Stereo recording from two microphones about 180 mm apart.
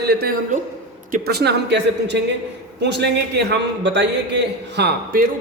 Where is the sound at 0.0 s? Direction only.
65° right (ahead or behind).